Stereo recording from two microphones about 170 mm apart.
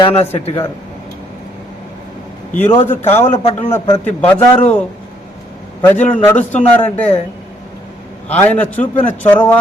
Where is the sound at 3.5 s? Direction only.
10° left (ahead or behind).